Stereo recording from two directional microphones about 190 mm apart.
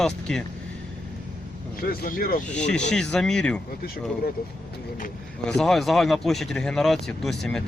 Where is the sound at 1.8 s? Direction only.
50° left (ahead or behind).